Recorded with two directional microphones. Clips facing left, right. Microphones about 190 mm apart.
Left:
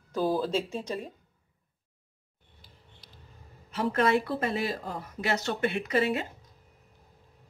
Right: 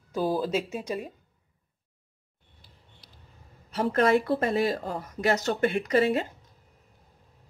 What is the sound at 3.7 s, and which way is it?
Speech, 40° right (ahead or behind).